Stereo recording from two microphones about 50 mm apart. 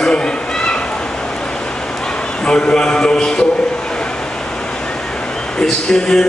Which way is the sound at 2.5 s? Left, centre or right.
Centre.